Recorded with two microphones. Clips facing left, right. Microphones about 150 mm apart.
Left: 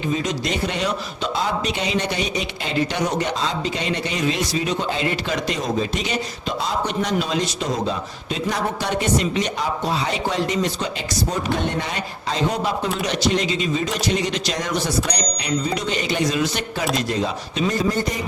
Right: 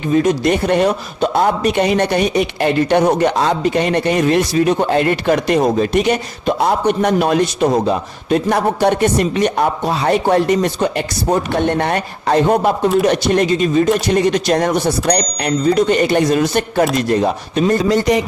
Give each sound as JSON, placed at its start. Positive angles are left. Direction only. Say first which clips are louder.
{"t": 0.1, "sound": "a man's voice", "louder": "right 12 dB", "side_deg": -55}
{"t": 17.8, "sound": "speech", "louder": "right 9 dB", "side_deg": -90}